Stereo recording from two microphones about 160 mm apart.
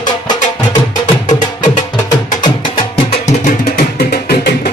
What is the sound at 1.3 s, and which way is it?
Music, 55° left (ahead or behind).